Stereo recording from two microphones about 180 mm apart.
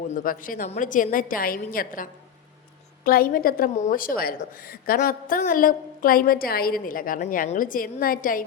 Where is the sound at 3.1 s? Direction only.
55° left (ahead or behind).